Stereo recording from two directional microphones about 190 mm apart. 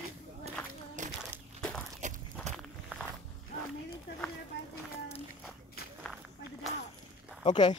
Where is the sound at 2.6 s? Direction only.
Centre (ahead or behind).